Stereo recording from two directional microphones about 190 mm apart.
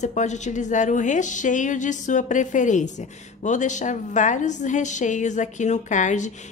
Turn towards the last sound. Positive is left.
turn(degrees=40)  # may be behind; listen again after turning